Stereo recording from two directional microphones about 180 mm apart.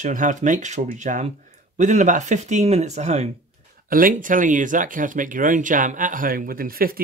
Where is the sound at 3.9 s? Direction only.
50° right (ahead or behind).